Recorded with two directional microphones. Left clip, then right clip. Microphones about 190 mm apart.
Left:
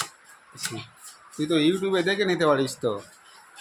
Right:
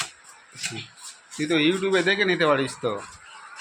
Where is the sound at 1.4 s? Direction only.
20° left (ahead or behind).